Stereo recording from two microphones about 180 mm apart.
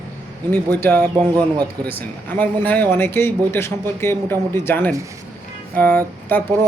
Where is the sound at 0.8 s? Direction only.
10° left (ahead or behind).